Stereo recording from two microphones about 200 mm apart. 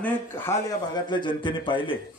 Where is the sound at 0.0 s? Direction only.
10° left (ahead or behind).